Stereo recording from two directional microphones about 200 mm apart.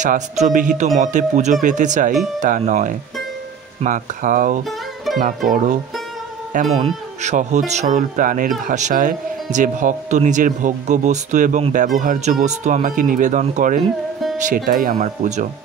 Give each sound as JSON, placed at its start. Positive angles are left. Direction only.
{"t": 0.0, "sound": "speech", "side_deg": -40}
{"t": 4.6, "sound": "music", "side_deg": 0}
{"t": 5.5, "sound": "speech", "side_deg": -35}